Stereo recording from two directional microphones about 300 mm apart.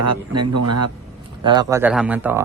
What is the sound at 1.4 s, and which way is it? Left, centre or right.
Speech, centre.